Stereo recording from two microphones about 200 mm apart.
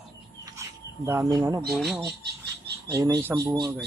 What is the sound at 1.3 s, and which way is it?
Speech, 15° right (ahead or behind).